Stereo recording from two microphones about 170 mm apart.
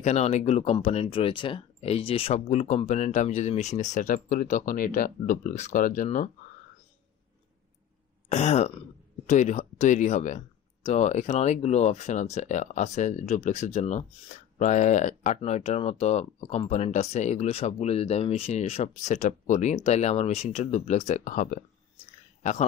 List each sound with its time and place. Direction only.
0.0 s speech: 40° left (ahead or behind)
8.3 s speech: 40° left (ahead or behind)